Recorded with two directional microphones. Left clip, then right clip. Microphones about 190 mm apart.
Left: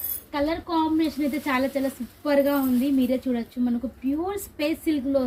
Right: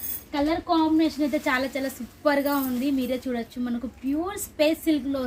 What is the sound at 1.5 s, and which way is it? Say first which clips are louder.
A woman's voice: left 1 dB; 25° right (ahead or behind).